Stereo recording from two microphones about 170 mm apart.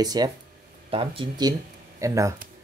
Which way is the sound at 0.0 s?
25° right (ahead or behind).